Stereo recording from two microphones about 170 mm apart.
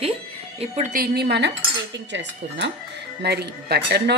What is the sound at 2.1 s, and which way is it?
Speech, 90° right.